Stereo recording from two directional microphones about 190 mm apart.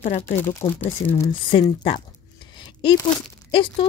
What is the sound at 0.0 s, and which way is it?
Speech, 45° left (ahead or behind).